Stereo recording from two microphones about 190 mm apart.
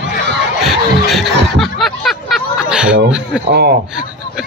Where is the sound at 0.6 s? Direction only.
Centre (ahead or behind).